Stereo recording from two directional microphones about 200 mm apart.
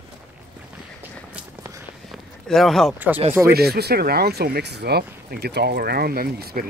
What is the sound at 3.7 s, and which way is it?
Speech, 50° right (ahead or behind).